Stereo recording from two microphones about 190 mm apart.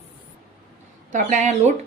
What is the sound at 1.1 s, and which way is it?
Speech, 40° right (ahead or behind).